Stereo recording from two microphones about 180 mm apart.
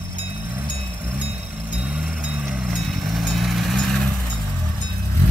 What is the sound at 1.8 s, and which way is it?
Vehicle, 5° right (ahead or behind).